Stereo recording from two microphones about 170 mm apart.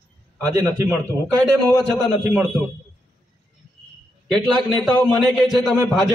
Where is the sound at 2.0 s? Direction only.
10° right (ahead or behind).